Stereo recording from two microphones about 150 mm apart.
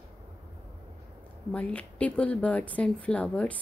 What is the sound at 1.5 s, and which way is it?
Speech, 10° left (ahead or behind).